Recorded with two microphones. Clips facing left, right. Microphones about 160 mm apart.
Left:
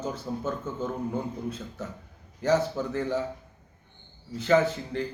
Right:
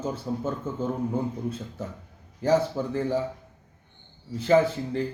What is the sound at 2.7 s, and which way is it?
Speech, 30° right (ahead or behind).